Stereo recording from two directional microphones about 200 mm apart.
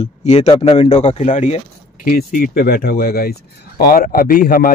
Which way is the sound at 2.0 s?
45° left (ahead or behind).